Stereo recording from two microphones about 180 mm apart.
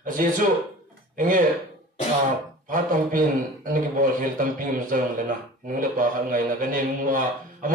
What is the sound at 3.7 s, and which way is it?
A man's voice, 45° right (ahead or behind).